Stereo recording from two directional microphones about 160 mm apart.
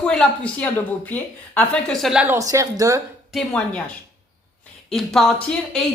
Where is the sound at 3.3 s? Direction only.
5° left (ahead or behind).